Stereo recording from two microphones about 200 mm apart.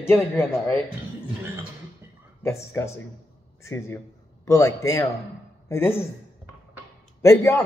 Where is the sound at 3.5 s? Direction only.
15° left (ahead or behind).